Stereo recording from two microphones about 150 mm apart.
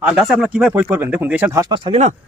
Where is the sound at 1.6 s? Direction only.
30° right (ahead or behind).